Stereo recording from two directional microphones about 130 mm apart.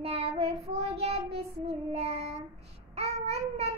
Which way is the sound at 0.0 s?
50° right (ahead or behind).